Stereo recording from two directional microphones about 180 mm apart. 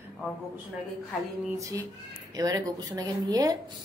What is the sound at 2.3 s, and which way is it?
A woman's voice, 20° right (ahead or behind).